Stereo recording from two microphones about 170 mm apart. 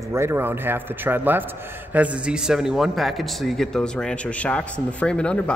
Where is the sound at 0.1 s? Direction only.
15° right (ahead or behind).